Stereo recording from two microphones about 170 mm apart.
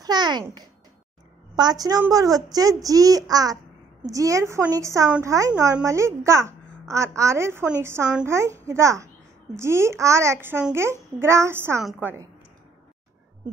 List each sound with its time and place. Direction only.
0.0 s a child's voice: 25° right (ahead or behind)
11.8 s a woman's voice: centre (ahead or behind)